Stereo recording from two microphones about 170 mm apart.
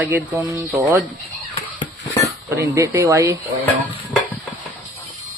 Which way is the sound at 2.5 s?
15° right (ahead or behind).